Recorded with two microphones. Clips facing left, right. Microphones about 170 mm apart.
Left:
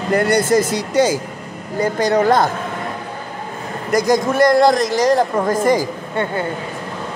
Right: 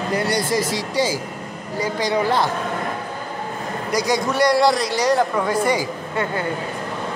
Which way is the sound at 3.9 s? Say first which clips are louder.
Left 5 dB; 50° left (ahead or behind).